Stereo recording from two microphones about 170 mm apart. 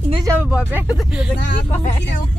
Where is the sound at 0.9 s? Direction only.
5° right (ahead or behind).